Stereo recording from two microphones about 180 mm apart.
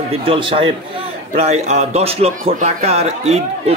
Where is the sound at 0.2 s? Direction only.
30° right (ahead or behind).